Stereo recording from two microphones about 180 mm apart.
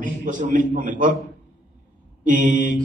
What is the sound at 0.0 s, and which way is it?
Speech, 45° right (ahead or behind).